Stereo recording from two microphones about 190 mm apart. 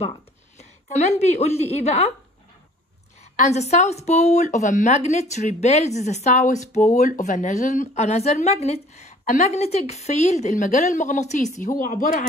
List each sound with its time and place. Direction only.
0.0 s a woman's voice: 35° left (ahead or behind)
3.3 s speech: 35° left (ahead or behind)